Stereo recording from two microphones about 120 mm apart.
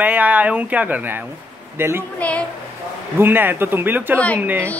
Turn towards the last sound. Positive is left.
turn(degrees=-15)  # may be behind; listen again after turning